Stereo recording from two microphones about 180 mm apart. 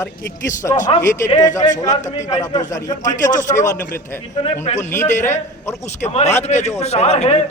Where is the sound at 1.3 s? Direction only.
20° left (ahead or behind).